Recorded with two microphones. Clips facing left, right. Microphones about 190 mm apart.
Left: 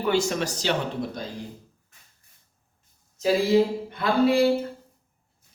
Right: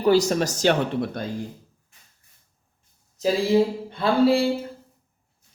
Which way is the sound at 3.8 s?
30° right (ahead or behind).